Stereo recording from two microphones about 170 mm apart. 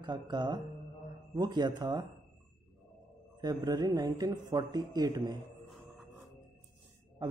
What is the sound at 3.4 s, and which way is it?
Speech, 25° right (ahead or behind).